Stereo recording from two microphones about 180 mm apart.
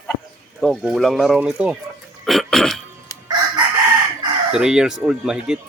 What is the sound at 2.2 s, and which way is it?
Throat clearing, centre (ahead or behind).